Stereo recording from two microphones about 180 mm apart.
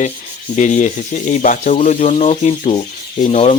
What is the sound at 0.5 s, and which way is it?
Speech, 45° left (ahead or behind).